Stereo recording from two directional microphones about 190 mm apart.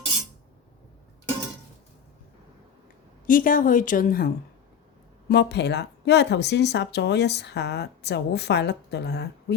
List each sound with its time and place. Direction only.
3.2 s a woman's voice: 45° left (ahead or behind)
5.3 s speech: 60° left (ahead or behind)